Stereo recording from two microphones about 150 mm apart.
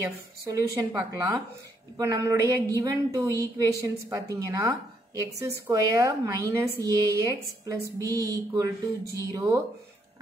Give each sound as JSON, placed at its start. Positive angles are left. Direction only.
{"t": 0.0, "sound": "a woman's voice", "side_deg": -20}